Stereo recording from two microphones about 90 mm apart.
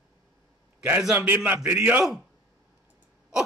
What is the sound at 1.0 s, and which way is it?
Speech, 15° right (ahead or behind).